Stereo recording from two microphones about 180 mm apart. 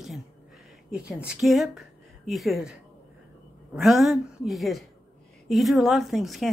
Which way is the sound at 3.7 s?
Centre (ahead or behind).